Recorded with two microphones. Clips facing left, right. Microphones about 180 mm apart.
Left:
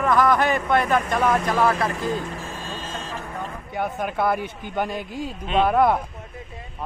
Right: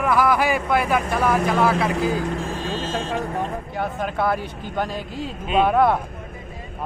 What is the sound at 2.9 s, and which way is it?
Vehicle, 75° right (ahead or behind).